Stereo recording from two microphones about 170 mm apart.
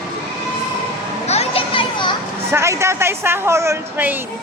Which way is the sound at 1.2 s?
40° left (ahead or behind).